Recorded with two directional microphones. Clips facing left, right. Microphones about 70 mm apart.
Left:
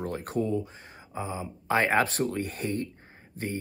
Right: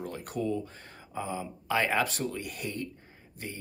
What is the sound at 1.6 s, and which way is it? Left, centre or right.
Speech, left.